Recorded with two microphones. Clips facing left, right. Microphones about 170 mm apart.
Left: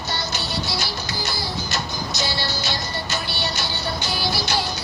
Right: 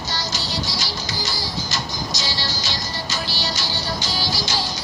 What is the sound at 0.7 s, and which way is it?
Music, 60° left (ahead or behind).